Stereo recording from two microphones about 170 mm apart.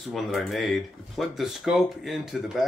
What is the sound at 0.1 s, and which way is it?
Speech, centre (ahead or behind).